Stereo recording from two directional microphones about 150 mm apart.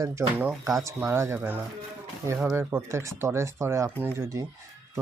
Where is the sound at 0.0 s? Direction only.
15° right (ahead or behind).